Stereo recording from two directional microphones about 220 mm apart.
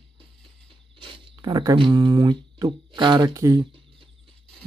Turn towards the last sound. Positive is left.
turn(degrees=-15)  # may be behind; listen again after turning